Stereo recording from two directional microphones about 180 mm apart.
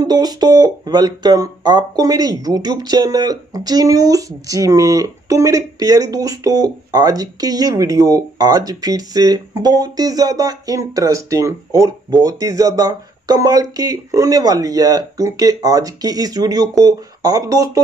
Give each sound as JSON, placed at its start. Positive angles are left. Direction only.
{"t": 0.0, "sound": "speech", "side_deg": -20}